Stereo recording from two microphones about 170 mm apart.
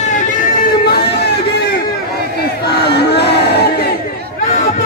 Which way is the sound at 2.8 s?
75° left (ahead or behind).